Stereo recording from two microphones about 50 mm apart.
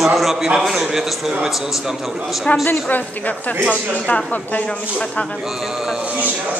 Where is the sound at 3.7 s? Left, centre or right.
Left.